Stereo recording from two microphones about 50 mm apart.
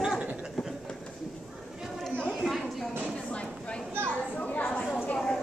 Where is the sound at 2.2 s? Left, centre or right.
Centre.